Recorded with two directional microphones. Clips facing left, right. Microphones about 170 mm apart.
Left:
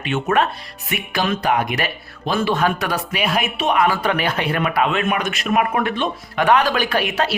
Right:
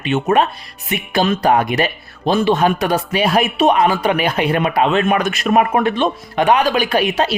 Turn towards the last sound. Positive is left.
turn(degrees=-15)  # may be behind; listen again after turning